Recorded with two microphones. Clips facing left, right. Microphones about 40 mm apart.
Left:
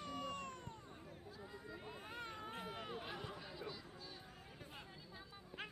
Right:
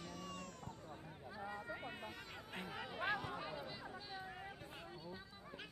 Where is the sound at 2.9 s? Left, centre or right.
Right.